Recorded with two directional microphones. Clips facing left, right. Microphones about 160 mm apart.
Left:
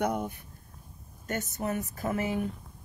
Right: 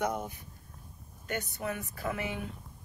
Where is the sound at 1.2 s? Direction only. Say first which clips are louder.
Left 3 dB; 45° left (ahead or behind).